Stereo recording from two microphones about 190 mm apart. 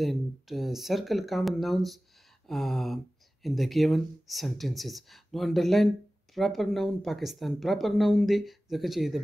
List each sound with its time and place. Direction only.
0.0 s speech: centre (ahead or behind)